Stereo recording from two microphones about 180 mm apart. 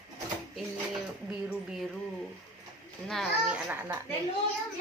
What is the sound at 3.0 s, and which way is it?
Speech, centre (ahead or behind).